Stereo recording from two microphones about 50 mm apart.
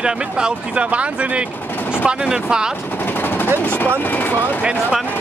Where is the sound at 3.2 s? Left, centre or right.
Left.